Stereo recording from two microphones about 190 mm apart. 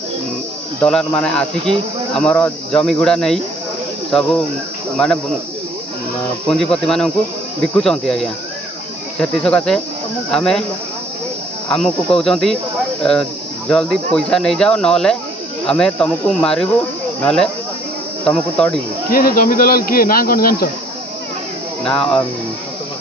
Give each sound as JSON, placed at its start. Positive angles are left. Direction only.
{"t": 0.7, "sound": "speech", "side_deg": 5}
{"t": 6.5, "sound": "speech", "side_deg": 0}
{"t": 11.7, "sound": "speech", "side_deg": 0}
{"t": 19.0, "sound": "speech", "side_deg": 50}